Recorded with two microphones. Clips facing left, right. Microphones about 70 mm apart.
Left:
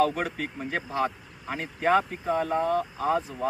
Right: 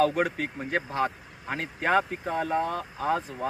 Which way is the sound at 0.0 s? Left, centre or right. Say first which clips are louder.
Right 1 dB; right.